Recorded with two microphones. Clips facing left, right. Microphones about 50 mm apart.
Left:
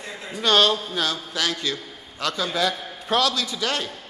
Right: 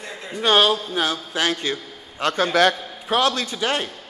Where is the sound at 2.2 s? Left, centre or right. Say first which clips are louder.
Right 6 dB; right.